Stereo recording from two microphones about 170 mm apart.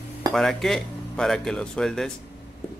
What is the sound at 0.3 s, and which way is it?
Speech, centre (ahead or behind).